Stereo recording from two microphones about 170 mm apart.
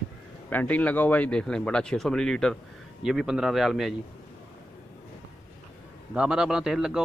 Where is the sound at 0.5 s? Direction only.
10° left (ahead or behind).